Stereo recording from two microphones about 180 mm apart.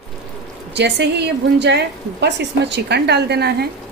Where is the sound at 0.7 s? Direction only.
75° right (ahead or behind).